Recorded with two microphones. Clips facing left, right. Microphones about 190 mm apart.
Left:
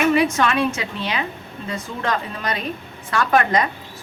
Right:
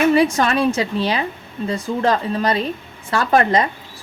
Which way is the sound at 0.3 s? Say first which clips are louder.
Right 3 dB; 35° right (ahead or behind).